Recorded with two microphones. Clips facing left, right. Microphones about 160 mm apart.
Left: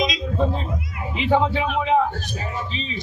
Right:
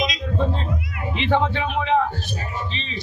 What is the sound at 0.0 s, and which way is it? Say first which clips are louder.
Cat: left 1 dB; centre (ahead or behind).